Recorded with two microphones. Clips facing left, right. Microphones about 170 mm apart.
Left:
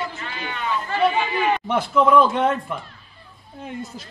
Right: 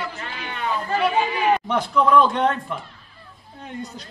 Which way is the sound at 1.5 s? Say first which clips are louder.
Left 1 dB; 5° left (ahead or behind).